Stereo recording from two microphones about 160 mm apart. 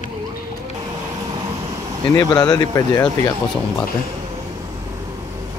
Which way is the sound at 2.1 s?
20° left (ahead or behind).